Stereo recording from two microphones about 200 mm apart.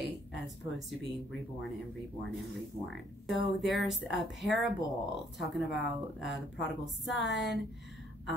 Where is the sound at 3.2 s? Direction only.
Centre (ahead or behind).